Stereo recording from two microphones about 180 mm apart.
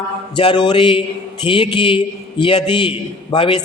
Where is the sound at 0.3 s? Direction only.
25° left (ahead or behind).